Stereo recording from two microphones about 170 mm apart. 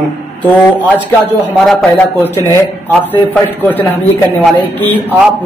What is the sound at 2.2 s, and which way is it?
Speech, 10° left (ahead or behind).